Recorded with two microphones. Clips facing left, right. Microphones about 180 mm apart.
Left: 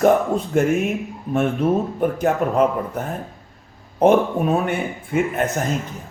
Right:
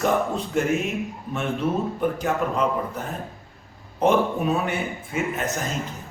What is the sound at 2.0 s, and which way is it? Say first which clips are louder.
A man's voice: left 4 dB; 50° left (ahead or behind).